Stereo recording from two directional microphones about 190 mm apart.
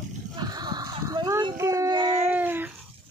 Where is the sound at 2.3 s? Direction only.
10° right (ahead or behind).